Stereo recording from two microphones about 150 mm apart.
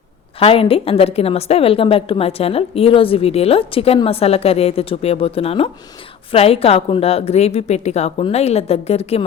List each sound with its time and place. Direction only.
0.3 s a woman's voice: 40° left (ahead or behind)